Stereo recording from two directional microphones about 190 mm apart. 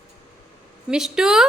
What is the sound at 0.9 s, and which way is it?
Speech, 5° right (ahead or behind).